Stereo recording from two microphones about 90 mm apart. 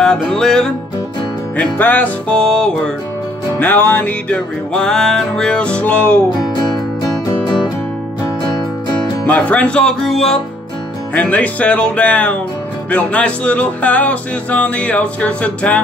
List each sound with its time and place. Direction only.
0.0 s music: 5° left (ahead or behind)
1.6 s music: 20° left (ahead or behind)
3.5 s music: 20° left (ahead or behind)
6.5 s music: 50° left (ahead or behind)
9.2 s music: 15° left (ahead or behind)
11.1 s music: 15° left (ahead or behind)